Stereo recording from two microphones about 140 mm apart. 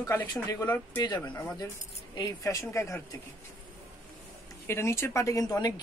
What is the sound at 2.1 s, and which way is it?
Speech, 25° left (ahead or behind).